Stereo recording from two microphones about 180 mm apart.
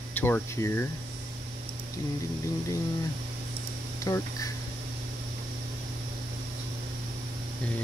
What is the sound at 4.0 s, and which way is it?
Speech, 20° left (ahead or behind).